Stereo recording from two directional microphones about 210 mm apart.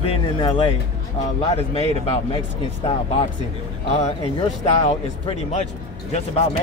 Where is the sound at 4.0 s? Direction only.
30° left (ahead or behind).